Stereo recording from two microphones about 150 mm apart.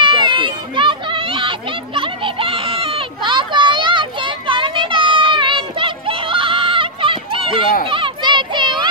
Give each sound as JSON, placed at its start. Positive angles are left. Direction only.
{"t": 0.0, "sound": "children playing", "side_deg": -30}